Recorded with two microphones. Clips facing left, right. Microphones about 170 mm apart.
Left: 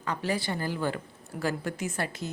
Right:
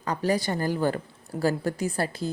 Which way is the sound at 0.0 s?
40° right (ahead or behind).